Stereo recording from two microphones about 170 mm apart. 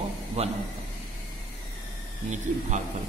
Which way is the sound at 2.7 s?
45° right (ahead or behind).